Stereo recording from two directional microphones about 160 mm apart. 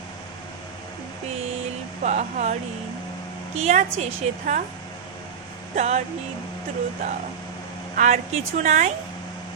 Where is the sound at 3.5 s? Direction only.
45° right (ahead or behind).